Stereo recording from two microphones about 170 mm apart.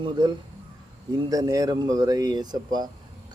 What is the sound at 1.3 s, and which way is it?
Speech, 20° right (ahead or behind).